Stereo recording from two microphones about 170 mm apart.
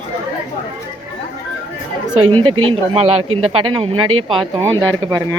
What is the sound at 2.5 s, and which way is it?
Speech, 35° right (ahead or behind).